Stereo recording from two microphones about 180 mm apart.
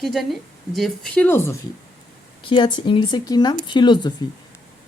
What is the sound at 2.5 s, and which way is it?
Speech, 25° left (ahead or behind).